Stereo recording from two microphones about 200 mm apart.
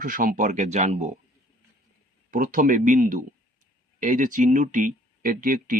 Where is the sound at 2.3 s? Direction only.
40° right (ahead or behind).